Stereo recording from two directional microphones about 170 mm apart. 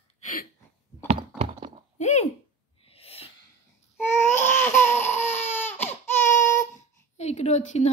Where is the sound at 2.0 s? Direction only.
40° left (ahead or behind).